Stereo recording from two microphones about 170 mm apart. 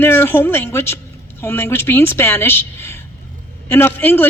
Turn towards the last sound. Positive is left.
turn(degrees=10)  # may be behind; listen again after turning